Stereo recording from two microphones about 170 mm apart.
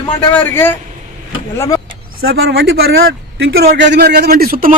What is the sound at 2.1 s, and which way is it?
Speech, 70° right (ahead or behind).